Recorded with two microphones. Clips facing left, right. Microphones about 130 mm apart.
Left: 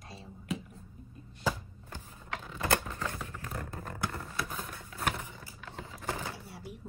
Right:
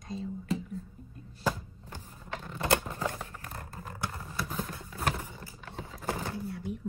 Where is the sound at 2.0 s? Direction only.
Centre (ahead or behind).